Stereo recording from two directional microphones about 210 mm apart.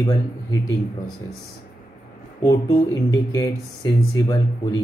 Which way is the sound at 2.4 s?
15° left (ahead or behind).